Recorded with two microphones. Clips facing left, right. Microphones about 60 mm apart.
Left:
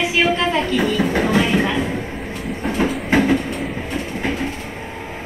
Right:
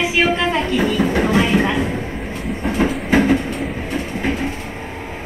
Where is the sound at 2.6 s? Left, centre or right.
Centre.